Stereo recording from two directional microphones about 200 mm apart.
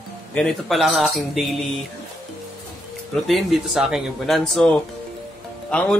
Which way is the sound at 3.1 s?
Centre (ahead or behind).